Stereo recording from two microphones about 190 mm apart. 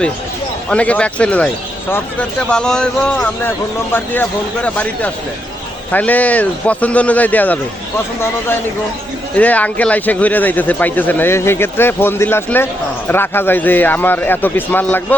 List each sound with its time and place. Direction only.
0.7 s speech: 5° left (ahead or behind)
9.3 s speech: 10° left (ahead or behind)